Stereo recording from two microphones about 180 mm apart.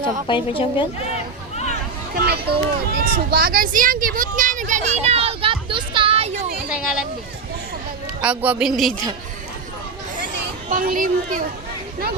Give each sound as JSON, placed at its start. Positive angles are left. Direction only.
{"t": 0.3, "sound": "a woman's voice", "side_deg": 30}
{"t": 2.1, "sound": "a sound", "side_deg": -65}
{"t": 8.2, "sound": "a woman's voice", "side_deg": -10}
{"t": 10.7, "sound": "speech", "side_deg": -50}